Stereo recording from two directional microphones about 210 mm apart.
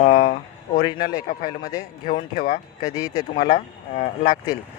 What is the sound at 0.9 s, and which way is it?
Speech, 45° left (ahead or behind).